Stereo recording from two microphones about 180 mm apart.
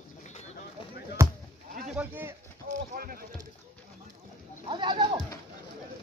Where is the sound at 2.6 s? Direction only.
50° right (ahead or behind).